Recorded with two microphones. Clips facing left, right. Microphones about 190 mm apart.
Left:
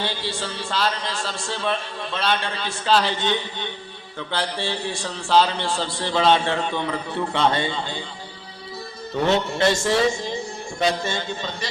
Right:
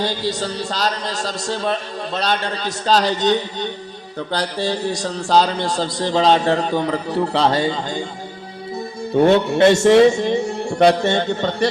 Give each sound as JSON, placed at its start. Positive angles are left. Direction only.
{"t": 0.0, "sound": "a man's voice", "side_deg": -40}
{"t": 9.1, "sound": "a man's voice", "side_deg": -55}